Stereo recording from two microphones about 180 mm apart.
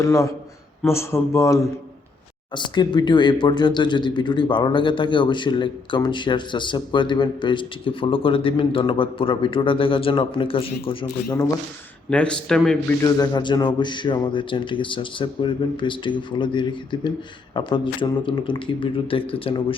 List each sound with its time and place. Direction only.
0.0 s speech: 15° left (ahead or behind)
12.1 s a man's voice: 5° left (ahead or behind)
13.0 s speech: 20° left (ahead or behind)